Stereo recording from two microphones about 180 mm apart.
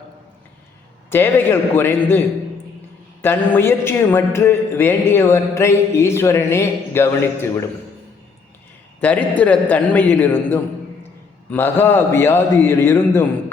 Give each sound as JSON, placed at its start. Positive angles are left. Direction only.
{"t": 1.1, "sound": "speech", "side_deg": 10}
{"t": 9.0, "sound": "speech", "side_deg": 10}